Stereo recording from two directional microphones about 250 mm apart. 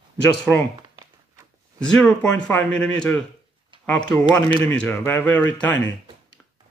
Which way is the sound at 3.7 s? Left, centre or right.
Centre.